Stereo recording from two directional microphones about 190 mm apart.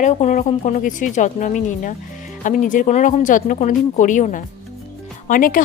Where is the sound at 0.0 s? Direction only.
35° left (ahead or behind).